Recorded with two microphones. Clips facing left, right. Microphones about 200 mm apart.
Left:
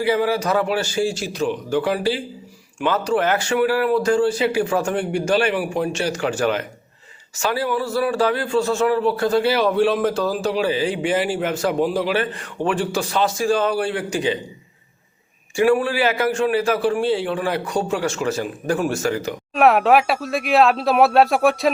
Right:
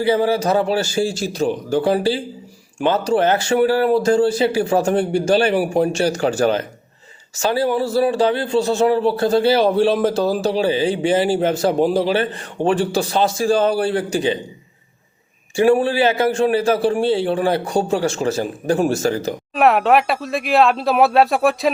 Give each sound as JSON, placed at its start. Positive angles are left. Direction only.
{"t": 0.0, "sound": "a man's voice", "side_deg": -30}
{"t": 15.5, "sound": "a man's voice", "side_deg": -30}
{"t": 19.5, "sound": "speech", "side_deg": 0}